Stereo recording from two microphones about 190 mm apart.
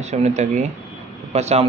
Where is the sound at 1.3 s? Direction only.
35° right (ahead or behind).